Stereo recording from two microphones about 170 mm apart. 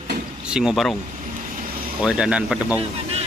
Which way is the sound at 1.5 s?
55° right (ahead or behind).